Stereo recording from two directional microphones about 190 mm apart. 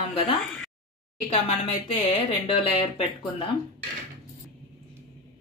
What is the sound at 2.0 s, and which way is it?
Speech, 35° left (ahead or behind).